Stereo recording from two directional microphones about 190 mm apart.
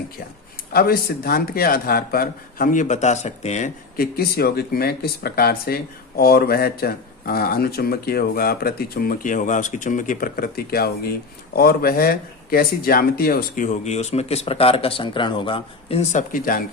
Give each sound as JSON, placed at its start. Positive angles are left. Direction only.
{"t": 0.7, "sound": "speech", "side_deg": 50}
{"t": 4.0, "sound": "speech", "side_deg": 55}